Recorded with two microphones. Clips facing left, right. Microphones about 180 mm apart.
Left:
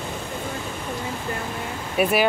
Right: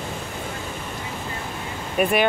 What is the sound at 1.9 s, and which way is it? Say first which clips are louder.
Speech: even; 5° left (ahead or behind).